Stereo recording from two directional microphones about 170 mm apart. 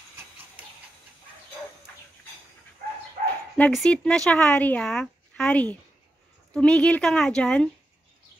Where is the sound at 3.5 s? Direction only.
Centre (ahead or behind).